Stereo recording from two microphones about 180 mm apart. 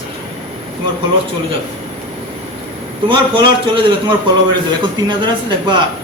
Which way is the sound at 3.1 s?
25° right (ahead or behind).